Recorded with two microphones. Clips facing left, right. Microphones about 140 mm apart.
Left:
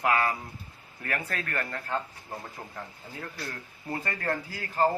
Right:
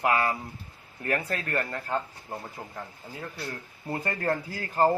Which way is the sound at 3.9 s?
25° right (ahead or behind).